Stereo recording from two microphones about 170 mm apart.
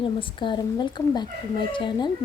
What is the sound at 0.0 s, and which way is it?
A woman's voice, 30° left (ahead or behind).